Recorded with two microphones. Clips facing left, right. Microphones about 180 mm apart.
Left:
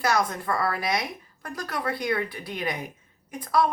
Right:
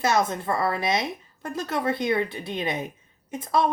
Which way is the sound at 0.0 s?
25° right (ahead or behind).